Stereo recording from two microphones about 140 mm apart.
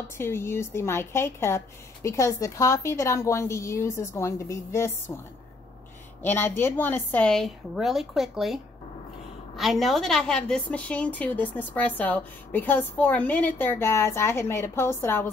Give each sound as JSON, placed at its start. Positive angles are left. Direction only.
{"t": 0.2, "sound": "a woman's voice", "side_deg": 20}
{"t": 6.2, "sound": "a woman's voice", "side_deg": 15}
{"t": 9.6, "sound": "a woman's voice", "side_deg": 0}